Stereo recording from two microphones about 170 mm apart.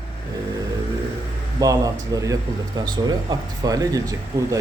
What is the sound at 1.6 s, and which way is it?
Speech, 20° right (ahead or behind).